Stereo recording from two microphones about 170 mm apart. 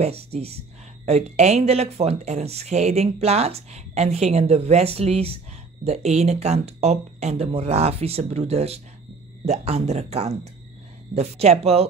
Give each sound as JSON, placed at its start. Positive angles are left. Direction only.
{"t": 0.0, "sound": "speech", "side_deg": -35}